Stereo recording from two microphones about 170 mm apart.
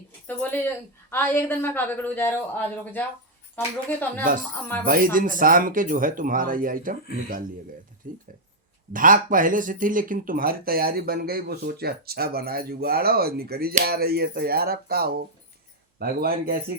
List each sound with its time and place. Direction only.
0.3 s a sound: 10° left (ahead or behind)
1.1 s speech: 15° left (ahead or behind)
4.2 s speech: 50° right (ahead or behind)